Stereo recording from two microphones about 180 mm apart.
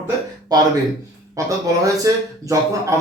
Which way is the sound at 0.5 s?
20° right (ahead or behind).